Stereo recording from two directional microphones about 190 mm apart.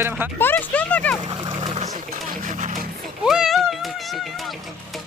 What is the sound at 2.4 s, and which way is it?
Vehicle, 45° right (ahead or behind).